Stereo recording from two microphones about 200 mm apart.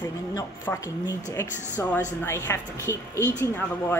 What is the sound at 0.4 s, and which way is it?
Speech, 15° left (ahead or behind).